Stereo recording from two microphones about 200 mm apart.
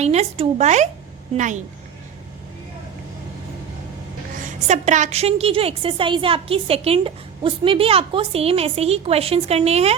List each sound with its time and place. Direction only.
0.0 s speech: 35° right (ahead or behind)
4.7 s a woman's voice: 35° right (ahead or behind)